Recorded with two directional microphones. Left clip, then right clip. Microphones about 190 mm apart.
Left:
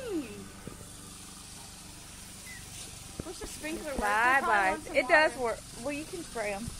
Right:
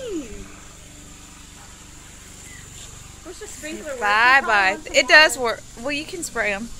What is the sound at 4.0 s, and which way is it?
Speech, 15° right (ahead or behind).